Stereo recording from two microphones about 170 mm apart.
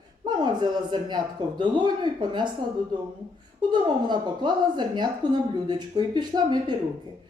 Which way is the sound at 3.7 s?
25° right (ahead or behind).